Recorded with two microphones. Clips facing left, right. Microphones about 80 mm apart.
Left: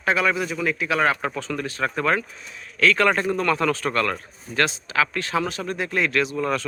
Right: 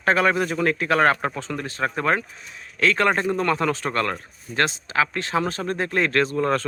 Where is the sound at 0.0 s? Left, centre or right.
Right.